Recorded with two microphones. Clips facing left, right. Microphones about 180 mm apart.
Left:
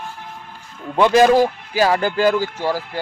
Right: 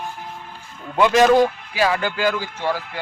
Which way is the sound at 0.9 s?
35° left (ahead or behind).